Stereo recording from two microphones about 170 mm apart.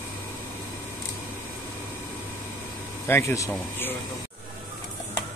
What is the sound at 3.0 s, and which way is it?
Speech, 15° left (ahead or behind).